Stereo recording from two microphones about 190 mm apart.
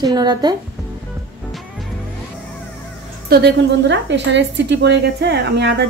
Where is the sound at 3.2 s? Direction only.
60° right (ahead or behind).